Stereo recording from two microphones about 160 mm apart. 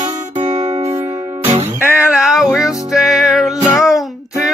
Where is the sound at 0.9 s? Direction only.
15° right (ahead or behind).